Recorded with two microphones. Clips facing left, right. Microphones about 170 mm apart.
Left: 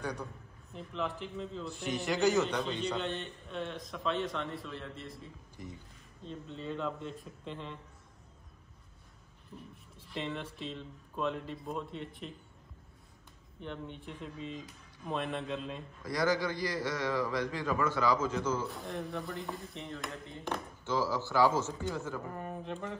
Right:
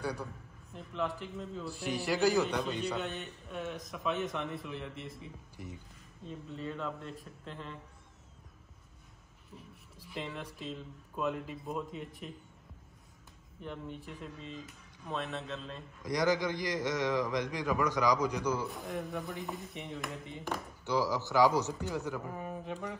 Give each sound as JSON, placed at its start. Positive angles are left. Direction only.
{"t": 0.0, "sound": "a man's voice", "side_deg": -10}
{"t": 9.5, "sound": "speech", "side_deg": 0}
{"t": 13.6, "sound": "speech", "side_deg": -5}
{"t": 16.0, "sound": "a man's voice", "side_deg": -20}
{"t": 18.7, "sound": "speech", "side_deg": 0}
{"t": 20.8, "sound": "a man's voice", "side_deg": -15}
{"t": 22.2, "sound": "speech", "side_deg": -5}